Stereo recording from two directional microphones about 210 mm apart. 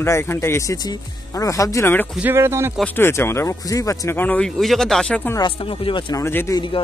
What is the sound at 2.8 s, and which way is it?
Speech, 10° left (ahead or behind).